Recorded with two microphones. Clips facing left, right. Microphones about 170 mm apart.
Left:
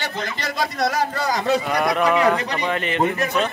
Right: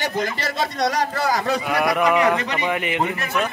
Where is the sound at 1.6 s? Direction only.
5° right (ahead or behind).